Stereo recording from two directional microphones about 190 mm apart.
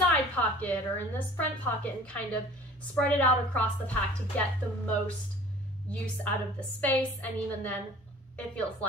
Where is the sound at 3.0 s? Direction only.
10° left (ahead or behind).